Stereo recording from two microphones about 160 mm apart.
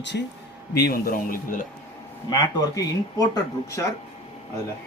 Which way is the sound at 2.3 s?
25° left (ahead or behind).